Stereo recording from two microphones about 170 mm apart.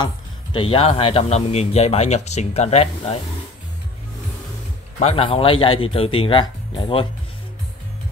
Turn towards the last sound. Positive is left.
turn(degrees=30)  # may be behind; listen again after turning